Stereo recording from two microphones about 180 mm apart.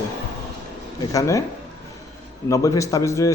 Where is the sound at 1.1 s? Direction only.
20° left (ahead or behind).